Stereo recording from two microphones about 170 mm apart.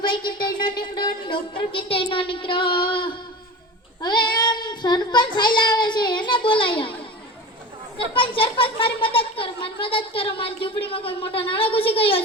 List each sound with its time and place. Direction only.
0.3 s a woman's voice: 25° left (ahead or behind)
4.0 s child singing: 25° left (ahead or behind)
7.9 s a child's voice: 30° left (ahead or behind)